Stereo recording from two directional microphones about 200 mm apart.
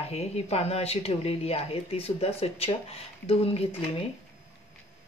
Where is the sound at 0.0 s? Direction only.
30° left (ahead or behind).